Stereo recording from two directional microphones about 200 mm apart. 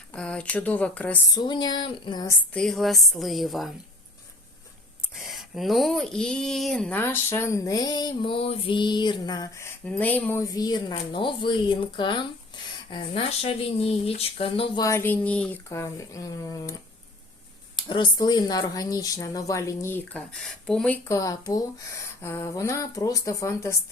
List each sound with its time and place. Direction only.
0.1 s speech: 5° left (ahead or behind); by 2.3 s 20° left (ahead or behind)
2.5 s a woman's voice: 5° left (ahead or behind)
5.1 s speech: centre (ahead or behind); by 14.8 s 25° left (ahead or behind)
14.8 s speech: 10° left (ahead or behind)
17.7 s speech: 25° left (ahead or behind)